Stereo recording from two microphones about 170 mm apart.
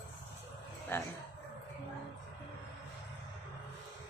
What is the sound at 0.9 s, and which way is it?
Speech, 15° left (ahead or behind).